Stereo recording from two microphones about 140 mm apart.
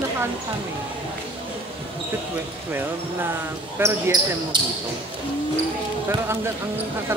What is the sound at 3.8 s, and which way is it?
Speech, 15° right (ahead or behind).